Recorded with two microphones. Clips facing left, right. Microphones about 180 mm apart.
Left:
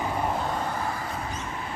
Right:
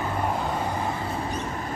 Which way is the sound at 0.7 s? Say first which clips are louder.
Right 3 dB; 20° right (ahead or behind).